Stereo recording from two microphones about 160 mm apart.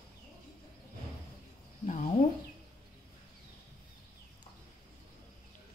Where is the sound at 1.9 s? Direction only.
45° left (ahead or behind).